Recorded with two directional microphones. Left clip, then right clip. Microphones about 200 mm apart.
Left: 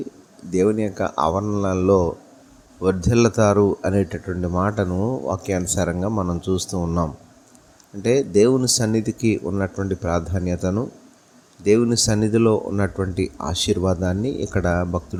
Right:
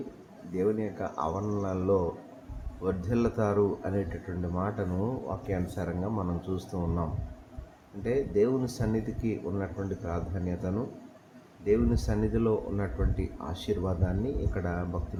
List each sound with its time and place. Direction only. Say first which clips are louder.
0.5 s speech: left 10 dB; 40° left (ahead or behind)
8.0 s speech: left 10 dB; 40° left (ahead or behind)